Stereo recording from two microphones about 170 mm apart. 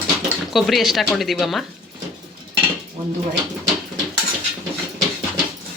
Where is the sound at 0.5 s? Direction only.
Centre (ahead or behind).